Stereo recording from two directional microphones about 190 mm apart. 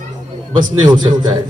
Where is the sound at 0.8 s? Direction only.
20° right (ahead or behind).